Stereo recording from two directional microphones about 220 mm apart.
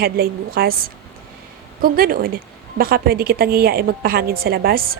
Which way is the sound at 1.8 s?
40° right (ahead or behind).